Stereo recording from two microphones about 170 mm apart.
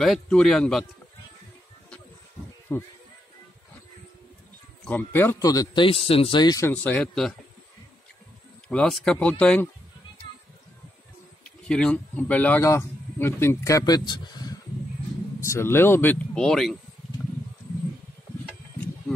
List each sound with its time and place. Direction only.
0.0 s speech: centre (ahead or behind)
2.7 s speech: 15° left (ahead or behind)
4.8 s a man's voice: 10° left (ahead or behind)
8.6 s speech: 5° left (ahead or behind)
11.4 s a man's voice: 5° left (ahead or behind)
17.2 s wild animals: 5° right (ahead or behind)